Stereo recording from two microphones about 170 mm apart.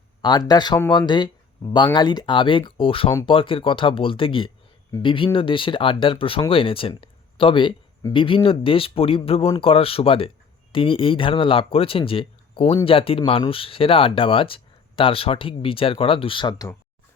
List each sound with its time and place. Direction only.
0.2 s speech: 25° left (ahead or behind)